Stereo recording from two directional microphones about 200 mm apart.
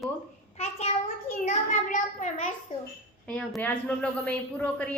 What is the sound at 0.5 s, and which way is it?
A child's voice, 30° left (ahead or behind).